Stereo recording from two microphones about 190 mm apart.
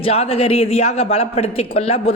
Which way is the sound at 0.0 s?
30° left (ahead or behind).